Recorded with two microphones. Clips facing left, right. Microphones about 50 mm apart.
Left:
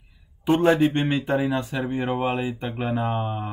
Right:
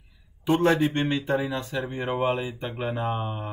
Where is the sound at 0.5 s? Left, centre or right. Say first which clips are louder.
Left 3 dB; centre.